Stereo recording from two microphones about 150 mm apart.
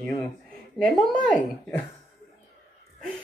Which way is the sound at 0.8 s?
5° left (ahead or behind).